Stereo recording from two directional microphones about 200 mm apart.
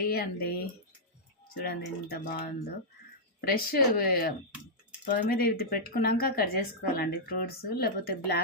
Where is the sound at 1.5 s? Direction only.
45° left (ahead or behind).